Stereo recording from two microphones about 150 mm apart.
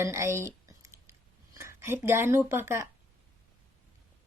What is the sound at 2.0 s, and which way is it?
Speech, 15° right (ahead or behind).